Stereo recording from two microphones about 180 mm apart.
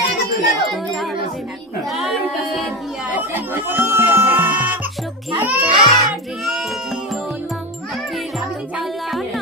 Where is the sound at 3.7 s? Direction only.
10° right (ahead or behind).